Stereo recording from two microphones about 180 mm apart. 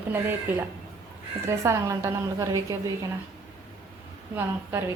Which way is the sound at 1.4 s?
15° right (ahead or behind).